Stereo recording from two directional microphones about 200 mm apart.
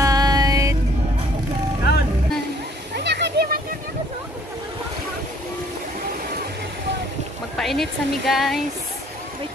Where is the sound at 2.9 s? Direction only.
55° right (ahead or behind).